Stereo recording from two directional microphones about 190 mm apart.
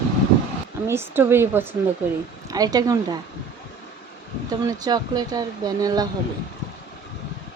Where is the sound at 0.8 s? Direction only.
10° right (ahead or behind).